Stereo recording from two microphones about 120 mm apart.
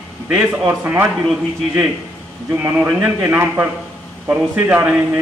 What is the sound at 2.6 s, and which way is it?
A man's voice, 15° right (ahead or behind).